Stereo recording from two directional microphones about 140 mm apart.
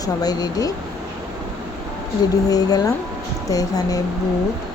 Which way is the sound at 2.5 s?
25° left (ahead or behind).